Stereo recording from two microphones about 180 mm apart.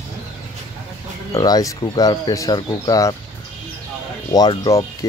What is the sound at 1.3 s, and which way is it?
Speech, 20° left (ahead or behind).